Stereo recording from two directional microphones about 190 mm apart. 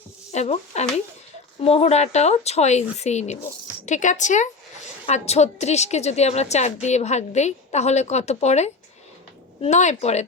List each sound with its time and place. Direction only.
0.3 s a woman's voice: 35° left (ahead or behind)